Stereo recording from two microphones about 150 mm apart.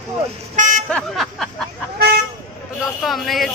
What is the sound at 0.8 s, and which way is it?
Speech, 5° left (ahead or behind).